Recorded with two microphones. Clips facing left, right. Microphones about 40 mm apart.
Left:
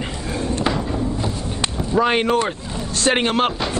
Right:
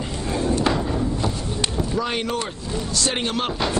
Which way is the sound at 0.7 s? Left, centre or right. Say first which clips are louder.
Left 1 dB; centre.